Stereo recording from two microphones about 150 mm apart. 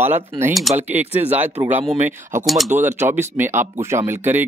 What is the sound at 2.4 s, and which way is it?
Speech, centre (ahead or behind).